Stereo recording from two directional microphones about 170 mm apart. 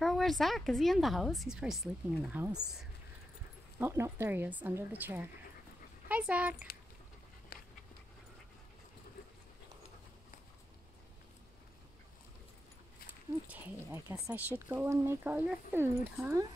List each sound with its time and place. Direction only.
0.0 s a woman's voice: centre (ahead or behind)
3.8 s speech: 15° right (ahead or behind)
7.5 s a sound: 70° left (ahead or behind)
13.5 s speech: 10° right (ahead or behind)